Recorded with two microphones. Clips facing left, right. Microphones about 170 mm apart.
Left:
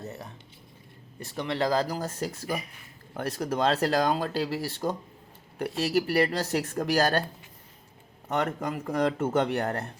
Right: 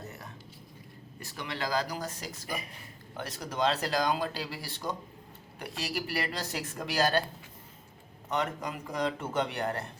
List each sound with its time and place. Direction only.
1.4 s speech: 35° left (ahead or behind)
2.0 s speech: 50° left (ahead or behind)
3.3 s speech: 40° left (ahead or behind)
8.3 s speech: 45° left (ahead or behind)